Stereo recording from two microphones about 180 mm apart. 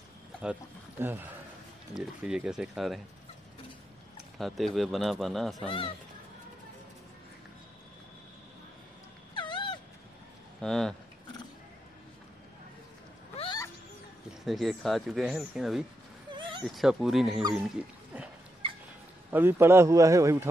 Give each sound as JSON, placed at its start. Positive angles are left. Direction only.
{"t": 0.4, "sound": "speech", "side_deg": -10}
{"t": 4.4, "sound": "speech", "side_deg": 0}
{"t": 5.7, "sound": "speech", "side_deg": 30}
{"t": 9.3, "sound": "dog", "side_deg": 25}
{"t": 10.6, "sound": "speech", "side_deg": 5}
{"t": 13.4, "sound": "a sound", "side_deg": 25}
{"t": 14.4, "sound": "speech", "side_deg": 0}
{"t": 16.3, "sound": "a sound", "side_deg": -25}
{"t": 16.6, "sound": "speech", "side_deg": 0}
{"t": 17.6, "sound": "wild animals", "side_deg": -5}
{"t": 19.3, "sound": "a man's voice", "side_deg": -15}